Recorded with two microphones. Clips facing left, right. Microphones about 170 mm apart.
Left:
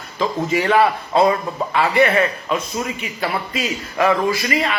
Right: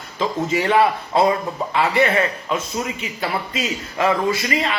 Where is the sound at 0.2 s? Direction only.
25° right (ahead or behind).